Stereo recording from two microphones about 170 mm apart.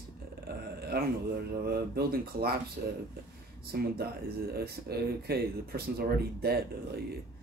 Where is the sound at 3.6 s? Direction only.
65° right (ahead or behind).